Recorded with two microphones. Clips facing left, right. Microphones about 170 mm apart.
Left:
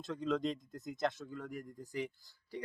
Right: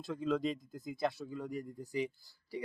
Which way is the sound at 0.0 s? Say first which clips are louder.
Right 1 dB; 5° right (ahead or behind).